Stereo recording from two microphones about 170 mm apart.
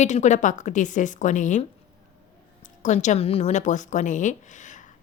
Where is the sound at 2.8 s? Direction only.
45° left (ahead or behind).